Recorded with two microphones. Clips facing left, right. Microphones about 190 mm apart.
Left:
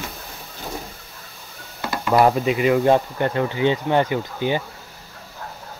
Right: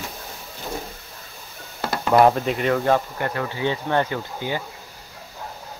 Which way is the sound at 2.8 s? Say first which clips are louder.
Left 3 dB; 20° left (ahead or behind).